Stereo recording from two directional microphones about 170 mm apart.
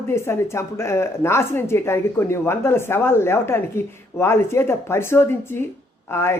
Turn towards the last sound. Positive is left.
turn(degrees=15)  # may be behind; listen again after turning